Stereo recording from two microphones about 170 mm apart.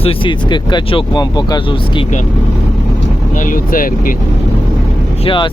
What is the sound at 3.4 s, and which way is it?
Speech, 55° left (ahead or behind).